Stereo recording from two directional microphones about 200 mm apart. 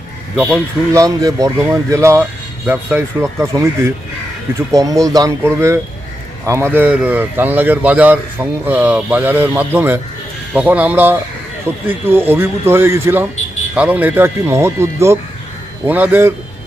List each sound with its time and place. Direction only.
0.9 s speech: 15° right (ahead or behind)